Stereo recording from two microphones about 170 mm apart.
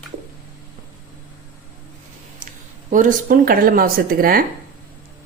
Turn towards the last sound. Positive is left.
turn(degrees=-60)  # may be behind; listen again after turning